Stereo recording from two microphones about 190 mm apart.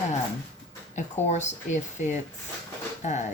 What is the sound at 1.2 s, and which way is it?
Speech, 35° left (ahead or behind).